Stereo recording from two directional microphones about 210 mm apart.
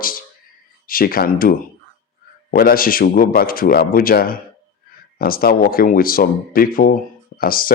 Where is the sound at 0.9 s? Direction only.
45° left (ahead or behind).